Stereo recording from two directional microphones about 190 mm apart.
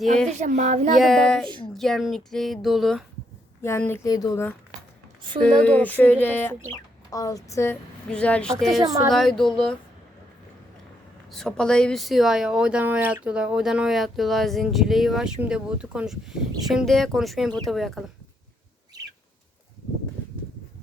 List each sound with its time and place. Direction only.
0.3 s speech: 35° right (ahead or behind)
0.9 s speech: centre (ahead or behind)
3.6 s a sound: 15° left (ahead or behind)
5.5 s a sound: 5° left (ahead or behind)
6.7 s speech: 20° left (ahead or behind); by 9.7 s centre (ahead or behind)
11.3 s speech: 5° left (ahead or behind)